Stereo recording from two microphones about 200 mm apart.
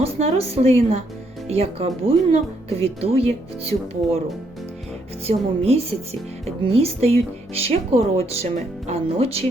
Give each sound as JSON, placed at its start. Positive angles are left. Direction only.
{"t": 0.0, "sound": "speech", "side_deg": -30}
{"t": 5.2, "sound": "speech", "side_deg": -30}